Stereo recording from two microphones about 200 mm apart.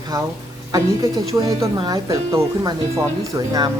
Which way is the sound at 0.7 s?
20° right (ahead or behind).